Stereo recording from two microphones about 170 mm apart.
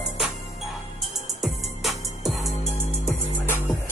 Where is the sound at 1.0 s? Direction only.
Centre (ahead or behind).